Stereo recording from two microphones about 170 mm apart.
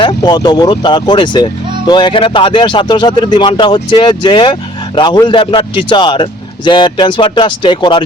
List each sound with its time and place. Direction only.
0.2 s speech: 25° left (ahead or behind)